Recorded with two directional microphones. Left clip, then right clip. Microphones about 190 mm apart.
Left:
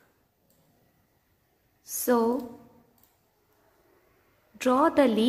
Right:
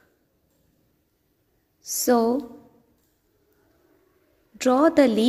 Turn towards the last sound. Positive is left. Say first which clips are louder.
# right 4 dB
turn(degrees=-25)  # may be behind; listen again after turning